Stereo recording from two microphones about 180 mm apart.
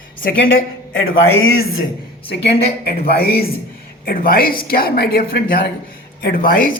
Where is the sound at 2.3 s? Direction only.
65° left (ahead or behind).